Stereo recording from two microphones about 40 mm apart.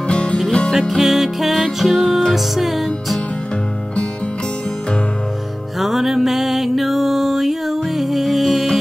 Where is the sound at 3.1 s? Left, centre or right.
Left.